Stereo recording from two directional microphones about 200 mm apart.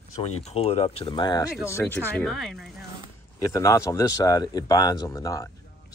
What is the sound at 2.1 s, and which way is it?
Speech, centre (ahead or behind).